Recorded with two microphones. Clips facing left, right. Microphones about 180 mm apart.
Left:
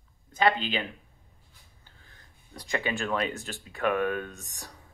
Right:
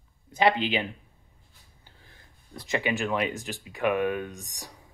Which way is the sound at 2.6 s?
20° right (ahead or behind).